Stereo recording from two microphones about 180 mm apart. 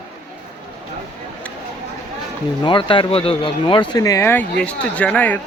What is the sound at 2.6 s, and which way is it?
Speech, 30° left (ahead or behind).